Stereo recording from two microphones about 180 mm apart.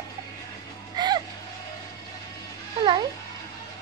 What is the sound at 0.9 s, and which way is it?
Music, 25° right (ahead or behind).